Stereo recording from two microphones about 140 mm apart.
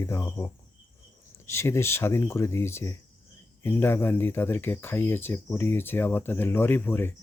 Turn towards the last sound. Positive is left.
turn(degrees=15)  # may be behind; listen again after turning